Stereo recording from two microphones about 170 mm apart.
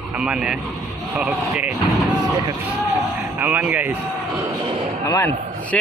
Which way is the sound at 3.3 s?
10° right (ahead or behind).